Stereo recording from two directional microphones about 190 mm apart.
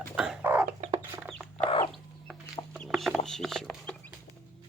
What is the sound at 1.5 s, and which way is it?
Chicken, 30° left (ahead or behind).